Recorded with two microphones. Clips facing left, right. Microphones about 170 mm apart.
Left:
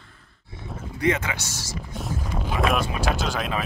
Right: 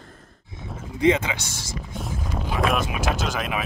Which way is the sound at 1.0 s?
20° right (ahead or behind).